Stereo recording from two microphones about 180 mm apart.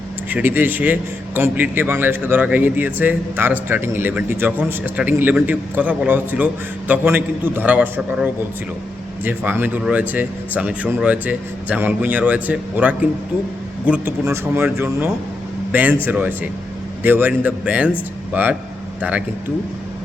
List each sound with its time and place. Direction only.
0.3 s a man's voice: 10° right (ahead or behind)